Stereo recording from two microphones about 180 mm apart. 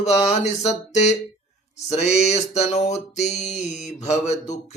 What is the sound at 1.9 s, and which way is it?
Mantra, 35° left (ahead or behind).